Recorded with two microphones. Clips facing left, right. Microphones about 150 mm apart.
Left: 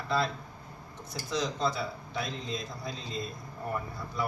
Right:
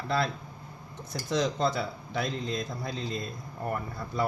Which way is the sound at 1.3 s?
55° right (ahead or behind).